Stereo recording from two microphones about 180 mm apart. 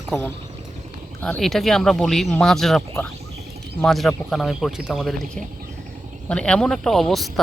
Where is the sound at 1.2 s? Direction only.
5° left (ahead or behind).